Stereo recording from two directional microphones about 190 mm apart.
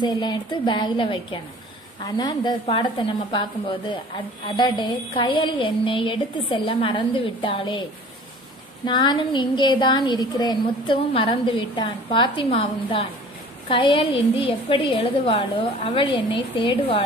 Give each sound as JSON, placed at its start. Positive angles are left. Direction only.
{"t": 0.0, "sound": "a woman's voice", "side_deg": 25}
{"t": 8.8, "sound": "a woman's voice", "side_deg": 25}